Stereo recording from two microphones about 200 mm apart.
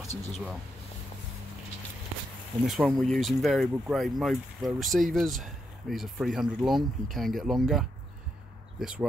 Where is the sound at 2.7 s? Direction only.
Centre (ahead or behind).